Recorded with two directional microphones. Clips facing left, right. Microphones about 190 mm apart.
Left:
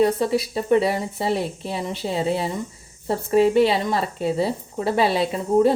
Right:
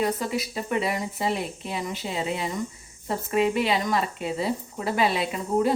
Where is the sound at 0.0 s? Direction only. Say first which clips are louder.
Left 7 dB; 30° left (ahead or behind).